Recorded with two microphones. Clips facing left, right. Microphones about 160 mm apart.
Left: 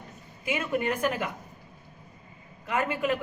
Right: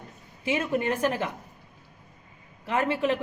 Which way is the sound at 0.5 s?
30° right (ahead or behind).